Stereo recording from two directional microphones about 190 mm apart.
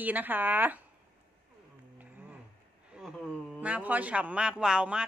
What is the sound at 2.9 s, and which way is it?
A man's voice, 5° right (ahead or behind).